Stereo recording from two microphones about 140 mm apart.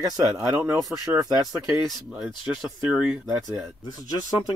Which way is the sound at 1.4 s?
Centre (ahead or behind).